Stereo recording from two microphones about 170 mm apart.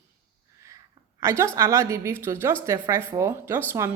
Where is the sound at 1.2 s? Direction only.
15° right (ahead or behind).